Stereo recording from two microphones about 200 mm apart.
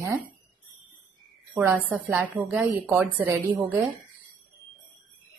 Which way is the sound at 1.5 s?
10° right (ahead or behind).